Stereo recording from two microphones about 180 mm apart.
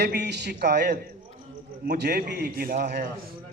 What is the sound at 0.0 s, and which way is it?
A man's voice, 70° right (ahead or behind).